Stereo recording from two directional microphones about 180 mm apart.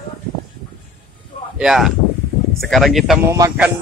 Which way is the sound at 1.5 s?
5° right (ahead or behind).